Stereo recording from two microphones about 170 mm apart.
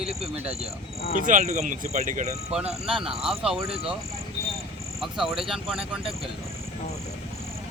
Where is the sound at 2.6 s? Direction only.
30° right (ahead or behind).